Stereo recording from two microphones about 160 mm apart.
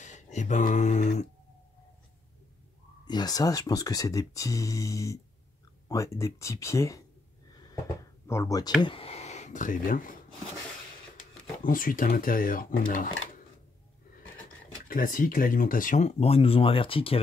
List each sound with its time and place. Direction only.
0.0 s speech: 50° left (ahead or behind)
3.1 s speech: 25° left (ahead or behind)
7.5 s a sound: 20° left (ahead or behind)
8.8 s speech: 35° left (ahead or behind); by 10.1 s 60° left (ahead or behind)
11.6 s speech: 60° left (ahead or behind)
14.9 s speech: 60° left (ahead or behind); by 17.2 s 35° left (ahead or behind)